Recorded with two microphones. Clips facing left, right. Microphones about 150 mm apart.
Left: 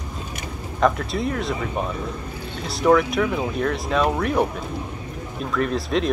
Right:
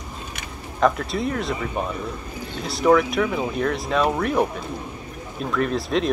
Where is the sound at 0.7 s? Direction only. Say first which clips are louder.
Even; centre (ahead or behind).